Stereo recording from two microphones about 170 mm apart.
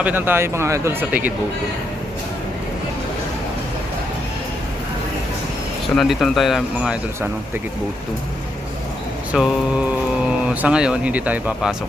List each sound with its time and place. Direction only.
0.0 s speech: 10° right (ahead or behind)
6.0 s speech: centre (ahead or behind)
9.3 s speech: 5° right (ahead or behind)